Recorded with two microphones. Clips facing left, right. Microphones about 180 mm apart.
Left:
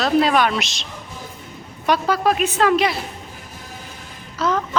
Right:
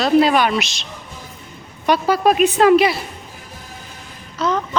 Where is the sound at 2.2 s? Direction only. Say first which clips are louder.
Right 6 dB; 15° right (ahead or behind).